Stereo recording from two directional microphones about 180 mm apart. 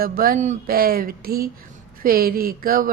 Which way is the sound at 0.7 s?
55° right (ahead or behind).